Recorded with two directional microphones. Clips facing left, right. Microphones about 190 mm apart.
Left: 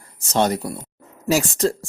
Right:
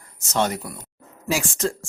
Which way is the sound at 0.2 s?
35° left (ahead or behind).